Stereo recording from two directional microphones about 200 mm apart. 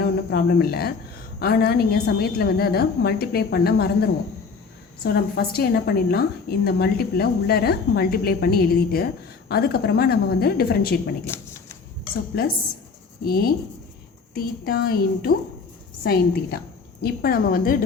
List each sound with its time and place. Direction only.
0.0 s a woman's voice: 50° left (ahead or behind)
5.0 s a woman's voice: 50° left (ahead or behind)
12.3 s a woman's voice: 50° left (ahead or behind)